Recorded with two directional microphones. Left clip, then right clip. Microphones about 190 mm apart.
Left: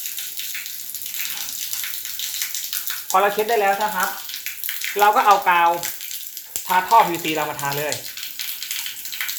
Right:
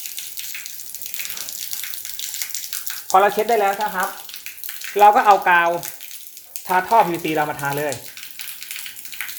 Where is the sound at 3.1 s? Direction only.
55° right (ahead or behind).